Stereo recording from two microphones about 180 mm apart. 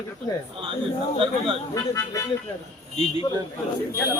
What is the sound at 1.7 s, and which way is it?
Speech, 15° left (ahead or behind).